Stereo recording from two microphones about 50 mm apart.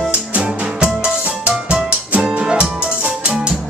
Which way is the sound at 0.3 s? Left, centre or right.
Right.